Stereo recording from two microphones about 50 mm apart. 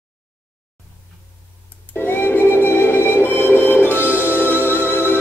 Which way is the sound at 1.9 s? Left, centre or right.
Left.